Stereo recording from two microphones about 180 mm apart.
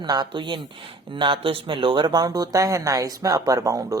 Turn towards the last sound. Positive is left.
turn(degrees=-15)  # may be behind; listen again after turning